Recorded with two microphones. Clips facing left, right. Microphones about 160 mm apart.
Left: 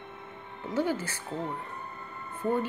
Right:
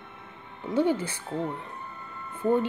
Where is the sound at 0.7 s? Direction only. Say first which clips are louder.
Right 5 dB; 25° right (ahead or behind).